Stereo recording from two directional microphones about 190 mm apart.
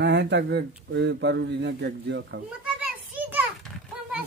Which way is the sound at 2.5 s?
5° right (ahead or behind).